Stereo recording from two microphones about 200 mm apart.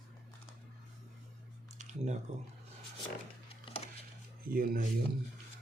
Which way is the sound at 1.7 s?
35° right (ahead or behind).